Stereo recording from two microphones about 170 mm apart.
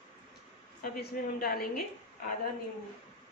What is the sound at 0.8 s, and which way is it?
Speech, 60° left (ahead or behind).